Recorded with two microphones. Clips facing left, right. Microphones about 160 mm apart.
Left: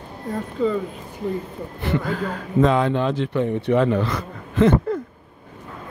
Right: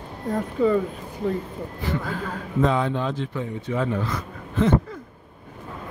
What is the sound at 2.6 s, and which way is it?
Speech, 75° left (ahead or behind).